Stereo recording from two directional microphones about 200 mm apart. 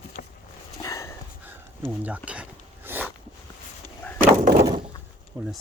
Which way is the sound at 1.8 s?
10° right (ahead or behind).